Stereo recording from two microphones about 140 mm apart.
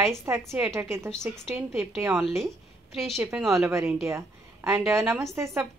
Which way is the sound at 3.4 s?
20° right (ahead or behind).